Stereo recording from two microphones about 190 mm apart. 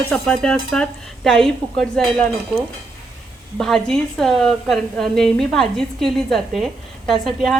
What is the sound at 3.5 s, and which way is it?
A woman's voice, 5° left (ahead or behind).